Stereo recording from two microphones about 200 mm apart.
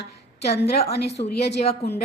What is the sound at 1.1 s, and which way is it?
Speech, 30° left (ahead or behind).